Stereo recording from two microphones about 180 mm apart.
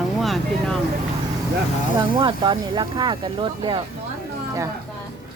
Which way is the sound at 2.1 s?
25° right (ahead or behind).